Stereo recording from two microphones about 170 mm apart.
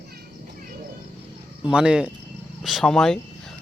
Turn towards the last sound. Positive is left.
turn(degrees=0)  # may be behind; listen again after turning